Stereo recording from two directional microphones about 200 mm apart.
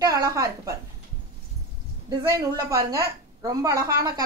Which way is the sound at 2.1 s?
20° right (ahead or behind).